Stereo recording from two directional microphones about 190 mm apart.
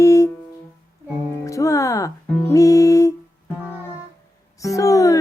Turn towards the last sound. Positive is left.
turn(degrees=15)  # may be behind; listen again after turning